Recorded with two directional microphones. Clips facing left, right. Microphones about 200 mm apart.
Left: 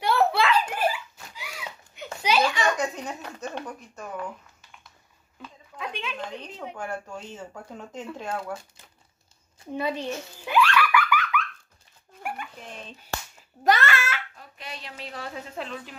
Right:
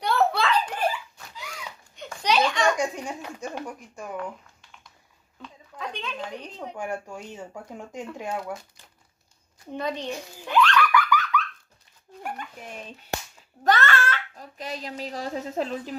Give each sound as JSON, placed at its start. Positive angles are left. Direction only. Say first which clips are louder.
{"t": 0.0, "sound": "giggle", "louder": "left 1 dB", "side_deg": 10}
{"t": 2.2, "sound": "a sound", "louder": "right 1 dB", "side_deg": 5}
{"t": 2.8, "sound": "speech", "louder": "right 1 dB", "side_deg": -10}
{"t": 5.4, "sound": "a sound", "louder": "even", "side_deg": 10}
{"t": 6.1, "sound": "speech", "louder": "right 1 dB", "side_deg": -10}
{"t": 9.7, "sound": "a sound", "louder": "left 1 dB", "side_deg": 5}
{"t": 12.5, "sound": "speech", "louder": "right 2 dB", "side_deg": -10}
{"t": 13.7, "sound": "a child's voice", "louder": "even", "side_deg": 10}
{"t": 14.3, "sound": "speech", "louder": "right 6 dB", "side_deg": -40}